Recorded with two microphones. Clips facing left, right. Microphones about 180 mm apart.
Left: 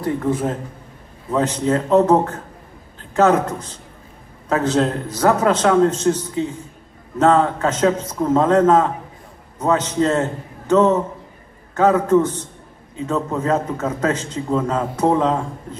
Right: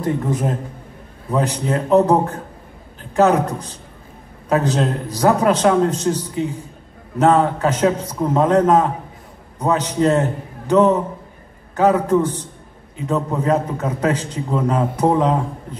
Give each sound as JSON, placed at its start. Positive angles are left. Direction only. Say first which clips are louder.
{"t": 0.0, "sound": "a man's voice", "louder": "even", "side_deg": -15}